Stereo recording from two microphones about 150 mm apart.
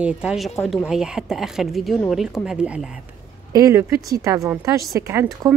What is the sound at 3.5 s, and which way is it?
Speech, 20° right (ahead or behind).